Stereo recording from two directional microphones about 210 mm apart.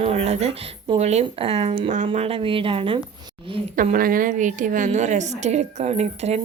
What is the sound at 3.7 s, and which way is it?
A woman's voice, 40° right (ahead or behind).